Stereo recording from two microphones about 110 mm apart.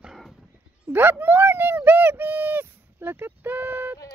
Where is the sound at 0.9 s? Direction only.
20° right (ahead or behind).